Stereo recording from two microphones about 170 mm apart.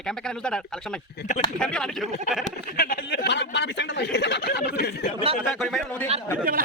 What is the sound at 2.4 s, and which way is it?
A man's voice, 55° left (ahead or behind).